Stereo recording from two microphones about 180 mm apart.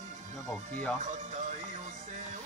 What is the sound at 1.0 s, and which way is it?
Speech, 40° right (ahead or behind).